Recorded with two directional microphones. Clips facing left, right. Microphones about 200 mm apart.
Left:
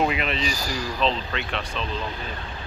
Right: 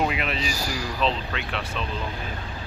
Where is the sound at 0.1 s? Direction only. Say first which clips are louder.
Left 2 dB; 5° right (ahead or behind).